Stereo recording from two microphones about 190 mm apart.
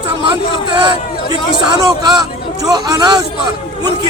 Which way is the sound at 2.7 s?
20° right (ahead or behind).